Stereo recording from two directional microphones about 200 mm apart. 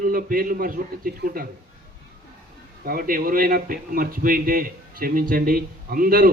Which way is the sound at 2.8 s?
45° right (ahead or behind).